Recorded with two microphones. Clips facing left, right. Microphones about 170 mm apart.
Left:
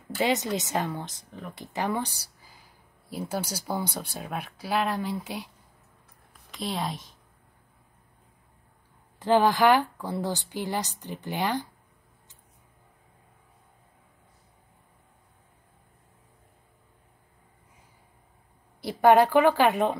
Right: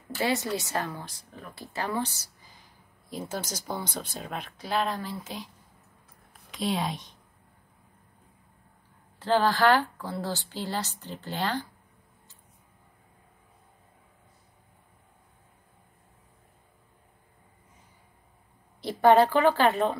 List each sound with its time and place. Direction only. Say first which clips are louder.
0.2 s a woman's voice: left 2 dB; 20° left (ahead or behind)
6.5 s a woman's voice: right 2 dB; centre (ahead or behind)
9.2 s a woman's voice: left 2 dB; 15° left (ahead or behind)
18.8 s a woman's voice: left 1 dB; 10° left (ahead or behind)